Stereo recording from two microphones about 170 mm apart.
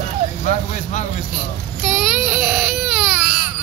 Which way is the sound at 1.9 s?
5° right (ahead or behind).